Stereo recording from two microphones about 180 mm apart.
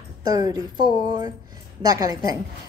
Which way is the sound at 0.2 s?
20° right (ahead or behind).